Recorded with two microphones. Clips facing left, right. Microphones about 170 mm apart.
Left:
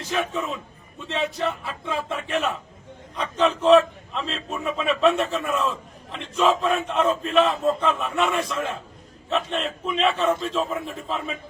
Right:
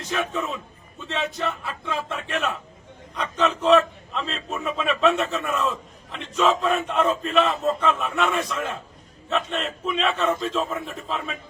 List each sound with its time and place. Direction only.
0.1 s a man's voice: centre (ahead or behind)